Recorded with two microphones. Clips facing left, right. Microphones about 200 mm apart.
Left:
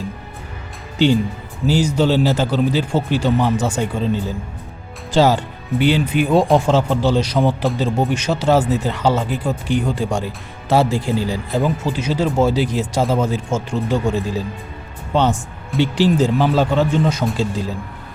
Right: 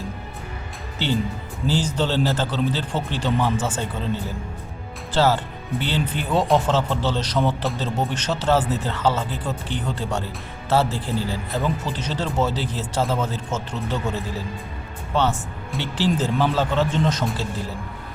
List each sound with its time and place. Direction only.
0.9 s speech: 15° left (ahead or behind)
15.7 s speech: centre (ahead or behind)
16.1 s speech: 15° left (ahead or behind)